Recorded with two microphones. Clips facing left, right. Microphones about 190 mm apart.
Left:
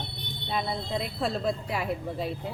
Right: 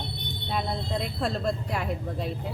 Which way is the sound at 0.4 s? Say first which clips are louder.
Even; centre (ahead or behind).